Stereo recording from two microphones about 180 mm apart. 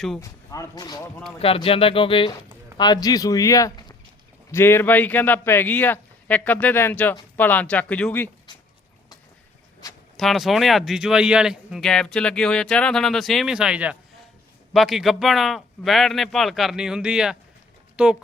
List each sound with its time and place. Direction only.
0.2 s a man's voice: 20° left (ahead or behind)
8.5 s a sound: 25° left (ahead or behind)
10.2 s speech: centre (ahead or behind)